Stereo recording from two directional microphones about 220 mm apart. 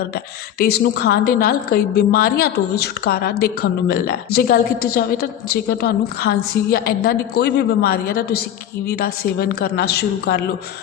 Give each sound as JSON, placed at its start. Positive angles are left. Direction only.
{"t": 0.6, "sound": "a woman's voice", "side_deg": 45}